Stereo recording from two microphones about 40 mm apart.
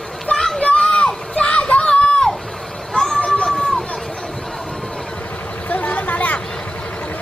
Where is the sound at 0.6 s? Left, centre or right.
Left.